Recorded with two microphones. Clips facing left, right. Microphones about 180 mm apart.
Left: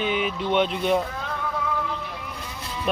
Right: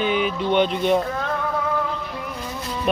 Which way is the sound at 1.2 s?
55° right (ahead or behind).